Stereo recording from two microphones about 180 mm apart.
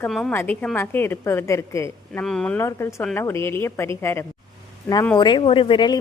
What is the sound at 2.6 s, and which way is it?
A woman's voice, 15° left (ahead or behind).